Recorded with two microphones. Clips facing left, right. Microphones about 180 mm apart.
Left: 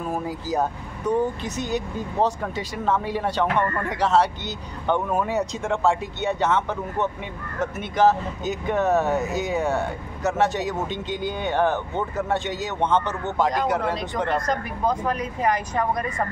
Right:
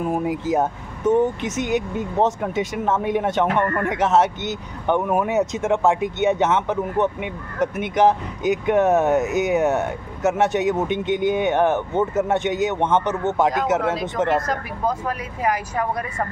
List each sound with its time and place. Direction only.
0.0 s speech: 20° right (ahead or behind)
14.3 s speech: 5° right (ahead or behind)